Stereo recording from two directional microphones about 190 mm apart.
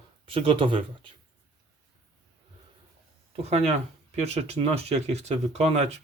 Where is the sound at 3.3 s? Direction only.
35° right (ahead or behind).